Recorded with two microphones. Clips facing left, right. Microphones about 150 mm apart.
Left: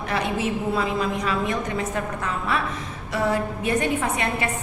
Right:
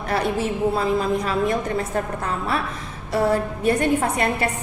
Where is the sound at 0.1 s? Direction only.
35° right (ahead or behind).